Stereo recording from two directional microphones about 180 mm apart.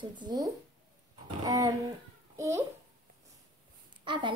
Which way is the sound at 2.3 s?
15° right (ahead or behind).